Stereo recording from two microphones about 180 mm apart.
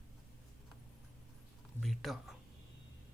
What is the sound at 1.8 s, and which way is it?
Speech, centre (ahead or behind).